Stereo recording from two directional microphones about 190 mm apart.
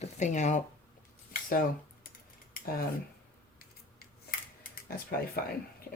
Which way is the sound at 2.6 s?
50° left (ahead or behind).